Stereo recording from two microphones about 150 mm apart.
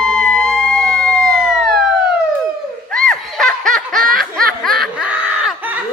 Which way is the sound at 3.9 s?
70° right (ahead or behind).